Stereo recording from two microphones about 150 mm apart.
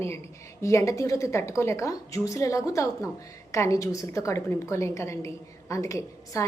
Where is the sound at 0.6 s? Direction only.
20° left (ahead or behind).